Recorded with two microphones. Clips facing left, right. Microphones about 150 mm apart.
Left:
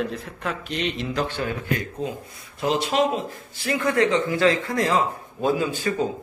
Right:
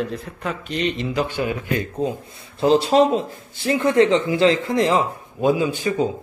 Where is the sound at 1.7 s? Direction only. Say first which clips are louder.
Right 5 dB; 30° right (ahead or behind).